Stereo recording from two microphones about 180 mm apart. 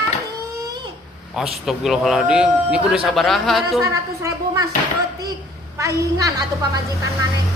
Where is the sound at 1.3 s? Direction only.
Centre (ahead or behind).